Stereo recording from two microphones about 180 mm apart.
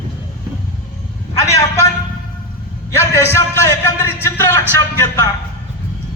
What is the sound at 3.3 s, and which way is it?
A man's voice, 15° left (ahead or behind).